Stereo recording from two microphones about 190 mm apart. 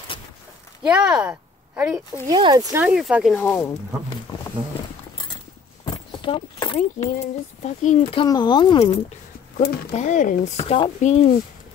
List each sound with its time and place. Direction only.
0.8 s speech: 5° right (ahead or behind)
2.2 s speech: 20° right (ahead or behind)
2.8 s speech: 5° right (ahead or behind)
5.9 s horse: 25° left (ahead or behind)
7.0 s speech: 35° left (ahead or behind)
9.9 s speech: 40° left (ahead or behind)